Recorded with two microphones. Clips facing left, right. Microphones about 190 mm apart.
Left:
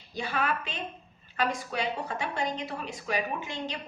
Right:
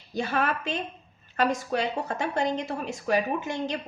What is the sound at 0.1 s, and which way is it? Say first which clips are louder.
A woman's voice: right 4 dB; 45° right (ahead or behind).